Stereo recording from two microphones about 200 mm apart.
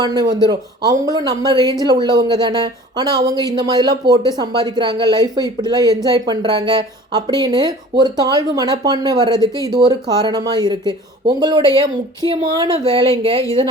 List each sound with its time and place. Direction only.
0.0 s speech: 20° right (ahead or behind)